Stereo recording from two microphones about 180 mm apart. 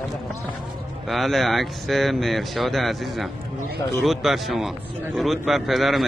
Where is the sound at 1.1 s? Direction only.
Centre (ahead or behind).